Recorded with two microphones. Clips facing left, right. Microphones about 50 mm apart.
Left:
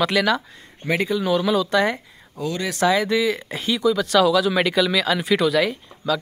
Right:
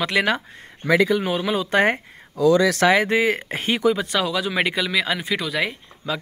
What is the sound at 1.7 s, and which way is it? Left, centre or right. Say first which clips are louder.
Speech: right 1 dB; right.